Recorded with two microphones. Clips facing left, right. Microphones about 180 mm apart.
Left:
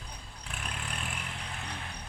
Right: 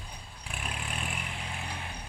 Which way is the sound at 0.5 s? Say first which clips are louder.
Right 2 dB; 5° right (ahead or behind).